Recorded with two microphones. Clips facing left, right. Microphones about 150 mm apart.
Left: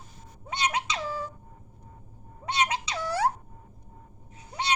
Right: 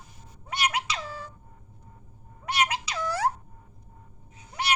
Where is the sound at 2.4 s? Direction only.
25° left (ahead or behind).